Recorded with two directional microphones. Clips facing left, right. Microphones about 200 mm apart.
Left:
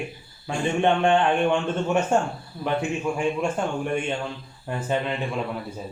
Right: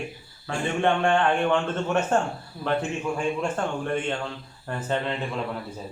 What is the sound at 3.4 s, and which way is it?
Speech, 10° left (ahead or behind).